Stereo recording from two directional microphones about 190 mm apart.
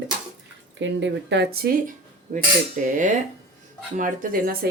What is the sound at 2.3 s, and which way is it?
Speech, 40° right (ahead or behind).